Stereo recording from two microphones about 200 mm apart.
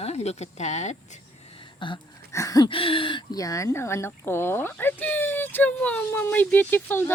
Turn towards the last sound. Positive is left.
turn(degrees=10)  # may be behind; listen again after turning